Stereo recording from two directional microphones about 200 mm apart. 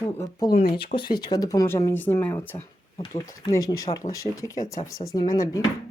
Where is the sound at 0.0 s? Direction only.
15° left (ahead or behind).